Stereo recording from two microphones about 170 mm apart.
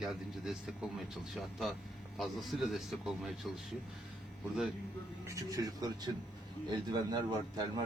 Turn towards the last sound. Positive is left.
turn(degrees=-25)  # may be behind; listen again after turning